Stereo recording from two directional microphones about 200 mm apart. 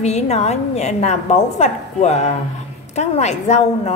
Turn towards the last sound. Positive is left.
turn(degrees=35)  # may be behind; listen again after turning